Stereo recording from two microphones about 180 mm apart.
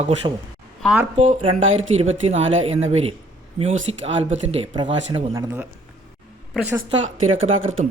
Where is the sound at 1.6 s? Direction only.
90° right.